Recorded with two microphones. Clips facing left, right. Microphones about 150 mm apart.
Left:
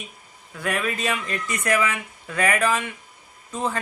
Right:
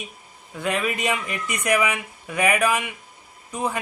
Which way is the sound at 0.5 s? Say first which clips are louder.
Right 1 dB; 20° right (ahead or behind).